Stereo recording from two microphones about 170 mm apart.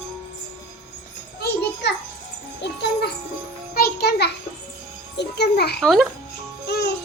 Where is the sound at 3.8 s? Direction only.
70° left (ahead or behind).